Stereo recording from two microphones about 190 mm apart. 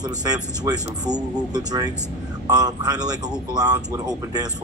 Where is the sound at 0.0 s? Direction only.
20° right (ahead or behind).